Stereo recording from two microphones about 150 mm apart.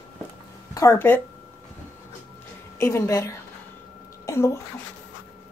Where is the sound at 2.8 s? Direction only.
20° left (ahead or behind).